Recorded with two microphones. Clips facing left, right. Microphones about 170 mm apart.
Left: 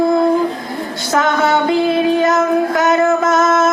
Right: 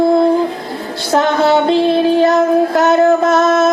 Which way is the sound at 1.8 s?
30° right (ahead or behind).